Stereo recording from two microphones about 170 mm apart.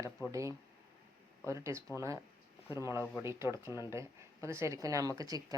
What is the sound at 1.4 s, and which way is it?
A woman's voice, 15° right (ahead or behind).